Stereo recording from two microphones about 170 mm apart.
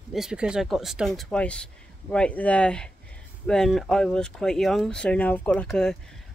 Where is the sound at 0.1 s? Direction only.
5° right (ahead or behind).